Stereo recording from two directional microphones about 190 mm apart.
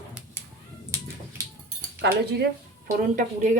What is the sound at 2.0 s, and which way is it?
Speech, 55° right (ahead or behind).